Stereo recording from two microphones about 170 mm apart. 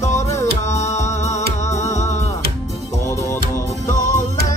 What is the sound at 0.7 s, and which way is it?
Music, 40° left (ahead or behind).